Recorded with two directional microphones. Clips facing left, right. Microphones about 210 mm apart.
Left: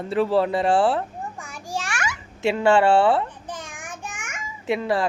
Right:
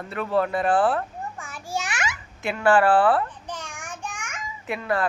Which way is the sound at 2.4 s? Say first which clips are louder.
Left 2 dB; 25° left (ahead or behind).